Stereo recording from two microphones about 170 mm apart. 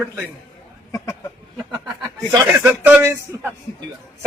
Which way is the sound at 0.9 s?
15° left (ahead or behind).